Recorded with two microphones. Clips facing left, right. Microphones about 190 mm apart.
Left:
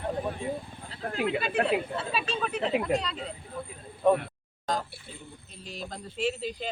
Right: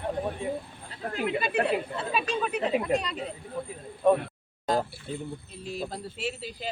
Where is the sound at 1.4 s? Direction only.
15° right (ahead or behind).